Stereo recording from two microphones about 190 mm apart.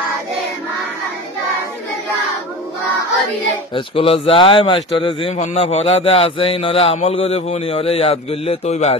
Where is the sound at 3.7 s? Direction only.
30° left (ahead or behind).